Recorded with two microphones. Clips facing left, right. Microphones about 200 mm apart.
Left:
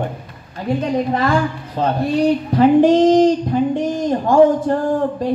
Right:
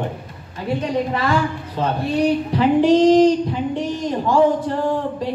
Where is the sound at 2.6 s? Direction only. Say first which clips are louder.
Left 3 dB; 50° left (ahead or behind).